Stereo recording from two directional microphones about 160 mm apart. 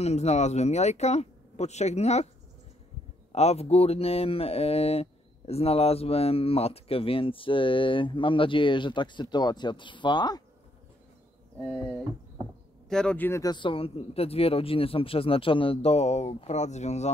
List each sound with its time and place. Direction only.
0.0 s speech: 40° left (ahead or behind)
3.3 s speech: 40° left (ahead or behind)
12.9 s speech: 5° left (ahead or behind)
13.4 s speech: 30° left (ahead or behind); by 17.1 s 45° left (ahead or behind)